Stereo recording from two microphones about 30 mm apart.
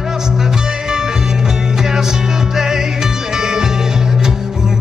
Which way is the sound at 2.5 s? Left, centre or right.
Right.